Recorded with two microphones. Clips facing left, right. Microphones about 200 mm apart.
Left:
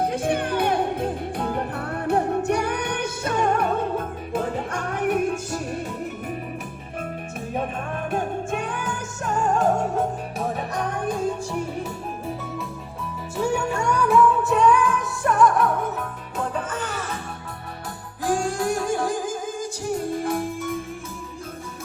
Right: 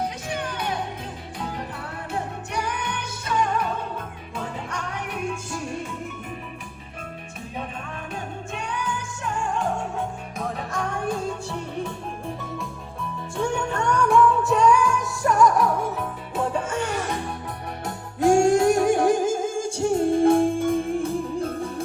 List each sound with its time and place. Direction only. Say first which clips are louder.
0.0 s music: left 6 dB; 55° left (ahead or behind)
8.1 s music: left 8 dB; 55° left (ahead or behind)
10.4 s music: left 2 dB; 20° left (ahead or behind)
13.3 s music: left 2 dB; 5° left (ahead or behind)
18.2 s music: right 7 dB; 25° right (ahead or behind)